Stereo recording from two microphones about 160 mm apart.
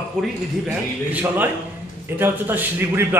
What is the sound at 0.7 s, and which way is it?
A man's voice, 10° right (ahead or behind).